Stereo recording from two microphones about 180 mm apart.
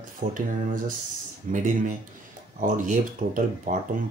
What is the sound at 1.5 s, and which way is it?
Speech, 45° right (ahead or behind).